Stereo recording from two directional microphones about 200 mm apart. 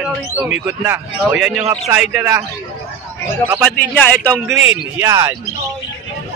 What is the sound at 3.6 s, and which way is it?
Speech, 10° left (ahead or behind).